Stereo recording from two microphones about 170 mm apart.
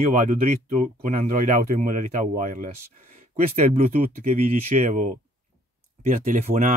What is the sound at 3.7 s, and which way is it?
Speech, 35° right (ahead or behind).